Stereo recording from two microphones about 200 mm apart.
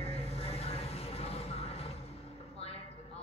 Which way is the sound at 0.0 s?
30° left (ahead or behind).